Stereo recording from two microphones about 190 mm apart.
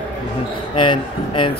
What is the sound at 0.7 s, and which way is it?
Speech, 25° left (ahead or behind).